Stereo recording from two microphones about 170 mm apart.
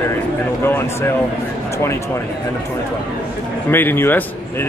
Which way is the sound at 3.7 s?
10° left (ahead or behind).